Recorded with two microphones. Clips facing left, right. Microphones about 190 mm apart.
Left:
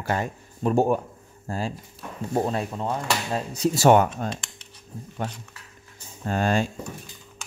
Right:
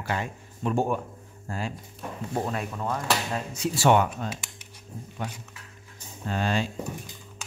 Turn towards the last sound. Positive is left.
turn(degrees=45)  # may be behind; listen again after turning